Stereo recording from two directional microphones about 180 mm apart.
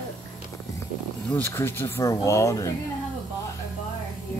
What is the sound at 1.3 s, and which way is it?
Speech, 10° left (ahead or behind).